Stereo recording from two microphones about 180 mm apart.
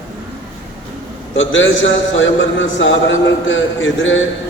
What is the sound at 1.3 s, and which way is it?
A man's voice, 90° left.